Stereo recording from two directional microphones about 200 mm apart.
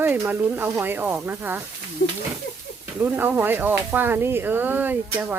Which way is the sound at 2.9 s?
10° right (ahead or behind).